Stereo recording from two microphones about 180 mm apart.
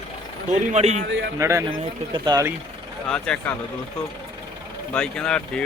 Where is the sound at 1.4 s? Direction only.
15° right (ahead or behind).